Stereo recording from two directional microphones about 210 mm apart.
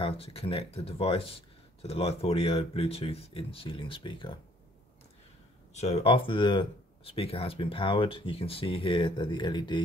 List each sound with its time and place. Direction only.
0.0 s speech: 25° left (ahead or behind)
5.7 s speech: 30° left (ahead or behind)